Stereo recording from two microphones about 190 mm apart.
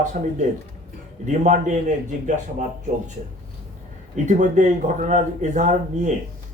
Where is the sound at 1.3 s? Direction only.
40° right (ahead or behind).